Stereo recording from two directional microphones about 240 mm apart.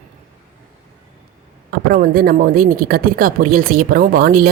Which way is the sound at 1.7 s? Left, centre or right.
Right.